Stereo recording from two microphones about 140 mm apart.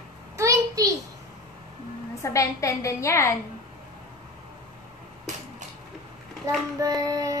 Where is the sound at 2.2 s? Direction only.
20° left (ahead or behind).